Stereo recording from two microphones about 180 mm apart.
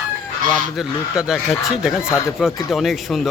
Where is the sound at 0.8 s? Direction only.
5° right (ahead or behind).